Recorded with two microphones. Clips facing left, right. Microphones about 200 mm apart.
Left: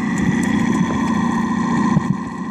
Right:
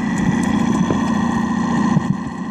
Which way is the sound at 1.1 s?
25° right (ahead or behind).